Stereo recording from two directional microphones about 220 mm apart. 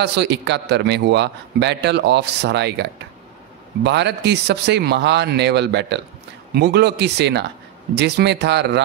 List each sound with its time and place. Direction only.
0.0 s a man's voice: 50° right (ahead or behind)